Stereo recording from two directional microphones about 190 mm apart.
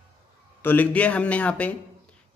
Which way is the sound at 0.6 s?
10° left (ahead or behind).